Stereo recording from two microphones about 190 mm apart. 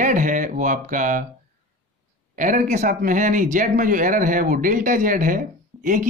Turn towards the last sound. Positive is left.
turn(degrees=-45)  # may be behind; listen again after turning